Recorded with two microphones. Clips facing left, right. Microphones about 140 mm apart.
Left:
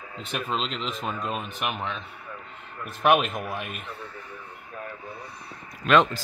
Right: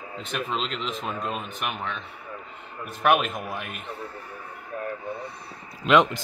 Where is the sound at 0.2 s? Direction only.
Centre (ahead or behind).